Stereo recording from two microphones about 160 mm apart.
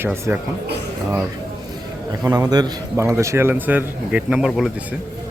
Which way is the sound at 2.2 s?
25° right (ahead or behind).